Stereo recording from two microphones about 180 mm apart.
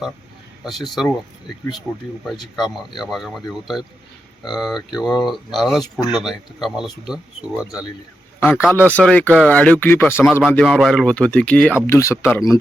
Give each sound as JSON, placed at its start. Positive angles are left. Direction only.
{"t": 0.6, "sound": "speech", "side_deg": 0}
{"t": 2.2, "sound": "speech", "side_deg": 0}
{"t": 8.4, "sound": "a man's voice", "side_deg": 15}